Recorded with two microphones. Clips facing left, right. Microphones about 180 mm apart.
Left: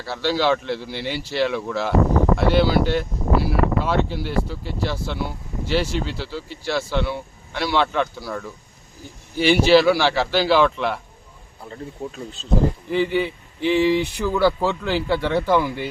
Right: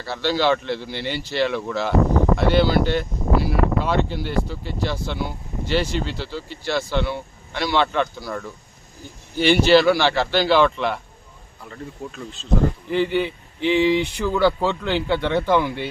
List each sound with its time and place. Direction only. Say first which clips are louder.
0.0 s speech: even; 5° left (ahead or behind)
11.6 s speech: left 2 dB; 35° left (ahead or behind)
12.9 s speech: even; 5° left (ahead or behind)